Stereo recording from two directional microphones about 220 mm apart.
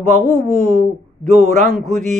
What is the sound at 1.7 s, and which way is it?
Mantra, centre (ahead or behind).